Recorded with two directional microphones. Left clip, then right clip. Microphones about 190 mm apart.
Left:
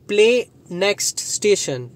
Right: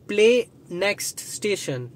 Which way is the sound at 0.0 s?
20° left (ahead or behind).